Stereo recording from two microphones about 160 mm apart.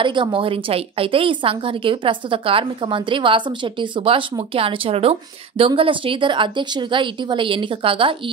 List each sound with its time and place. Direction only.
0.0 s a woman's voice: 30° right (ahead or behind)